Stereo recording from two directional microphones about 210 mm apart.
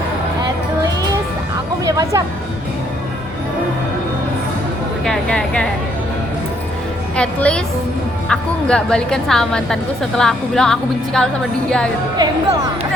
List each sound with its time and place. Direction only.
1.8 s music: 15° right (ahead or behind)
5.0 s a woman's voice: 5° left (ahead or behind)
7.2 s a woman's voice: 5° left (ahead or behind)
12.1 s speech: 20° right (ahead or behind)